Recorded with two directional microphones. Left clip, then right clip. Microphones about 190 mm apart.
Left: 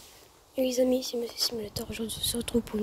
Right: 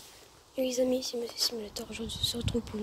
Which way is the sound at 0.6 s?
30° left (ahead or behind).